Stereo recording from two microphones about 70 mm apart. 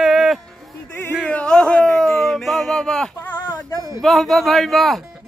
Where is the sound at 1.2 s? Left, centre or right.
Centre.